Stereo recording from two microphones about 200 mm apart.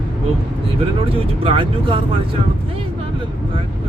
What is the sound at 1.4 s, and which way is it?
Speech, 25° right (ahead or behind).